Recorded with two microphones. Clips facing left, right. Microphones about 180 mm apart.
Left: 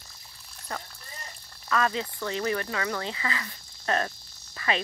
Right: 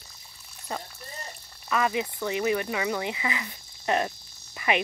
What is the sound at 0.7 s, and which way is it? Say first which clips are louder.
Cricket: right 3 dB; 20° right (ahead or behind).